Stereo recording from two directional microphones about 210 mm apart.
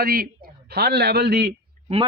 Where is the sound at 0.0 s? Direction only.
45° right (ahead or behind).